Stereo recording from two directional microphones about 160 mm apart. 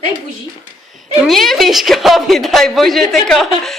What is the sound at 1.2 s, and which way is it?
A woman's voice, centre (ahead or behind).